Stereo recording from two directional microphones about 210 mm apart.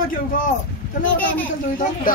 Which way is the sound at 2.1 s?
40° left (ahead or behind).